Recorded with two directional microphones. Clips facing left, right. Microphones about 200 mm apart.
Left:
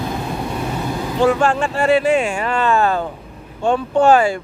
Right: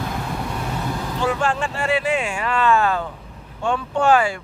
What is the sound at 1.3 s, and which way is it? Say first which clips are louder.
Speech: left 3 dB; 55° left (ahead or behind).